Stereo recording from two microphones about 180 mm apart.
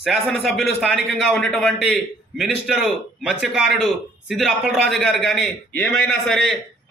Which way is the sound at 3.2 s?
5° right (ahead or behind).